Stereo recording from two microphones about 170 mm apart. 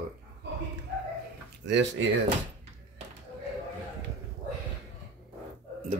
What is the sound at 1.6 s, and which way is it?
Speech, 90° right.